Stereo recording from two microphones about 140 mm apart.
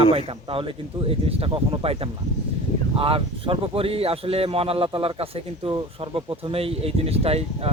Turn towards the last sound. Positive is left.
turn(degrees=-45)  # may be behind; listen again after turning